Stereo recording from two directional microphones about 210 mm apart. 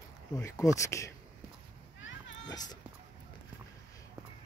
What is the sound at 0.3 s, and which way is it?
Speech, 15° left (ahead or behind).